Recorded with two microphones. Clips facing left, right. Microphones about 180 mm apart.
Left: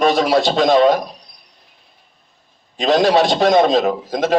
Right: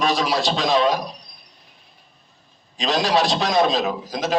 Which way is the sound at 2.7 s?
60° left (ahead or behind).